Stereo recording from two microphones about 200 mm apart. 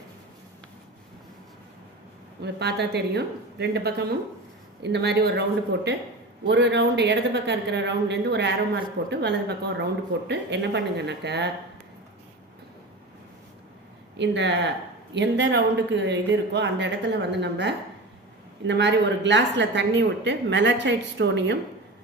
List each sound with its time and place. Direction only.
2.4 s a woman's voice: 55° right (ahead or behind)
14.2 s a woman's voice: 60° right (ahead or behind)